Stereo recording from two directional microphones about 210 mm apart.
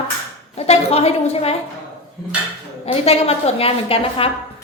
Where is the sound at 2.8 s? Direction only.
30° left (ahead or behind).